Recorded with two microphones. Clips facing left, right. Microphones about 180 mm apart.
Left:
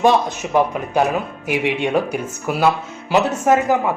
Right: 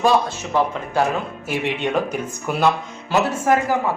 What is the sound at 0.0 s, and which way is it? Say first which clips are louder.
Speech: left 2 dB; 15° left (ahead or behind).